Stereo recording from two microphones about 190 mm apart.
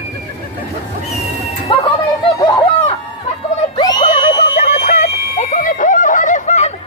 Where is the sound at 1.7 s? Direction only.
30° left (ahead or behind).